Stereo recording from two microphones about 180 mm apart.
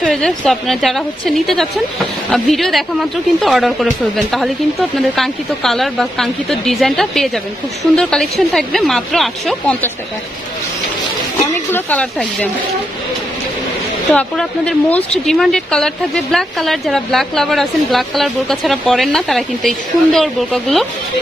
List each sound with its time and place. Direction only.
0.0 s speech: 5° left (ahead or behind)
11.5 s a woman's voice: 10° left (ahead or behind)
14.1 s speech: 5° left (ahead or behind)